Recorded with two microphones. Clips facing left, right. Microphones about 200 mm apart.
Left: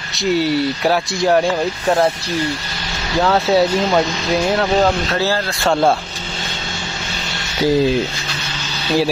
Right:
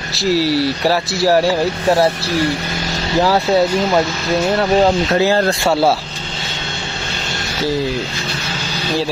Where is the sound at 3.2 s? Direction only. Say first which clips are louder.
Even; 5° right (ahead or behind).